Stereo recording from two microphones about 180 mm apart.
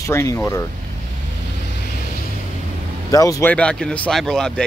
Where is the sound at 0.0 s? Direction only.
15° left (ahead or behind).